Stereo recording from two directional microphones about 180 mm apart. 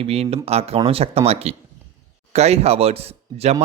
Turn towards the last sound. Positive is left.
turn(degrees=-35)  # may be behind; listen again after turning